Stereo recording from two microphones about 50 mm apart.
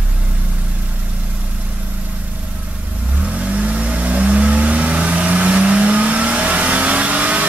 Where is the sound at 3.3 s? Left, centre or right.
Right.